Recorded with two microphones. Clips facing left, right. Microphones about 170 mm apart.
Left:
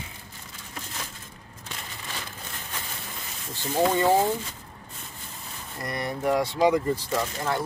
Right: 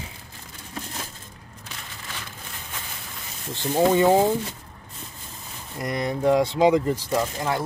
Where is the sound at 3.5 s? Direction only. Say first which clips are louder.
Right 4 dB; 20° right (ahead or behind).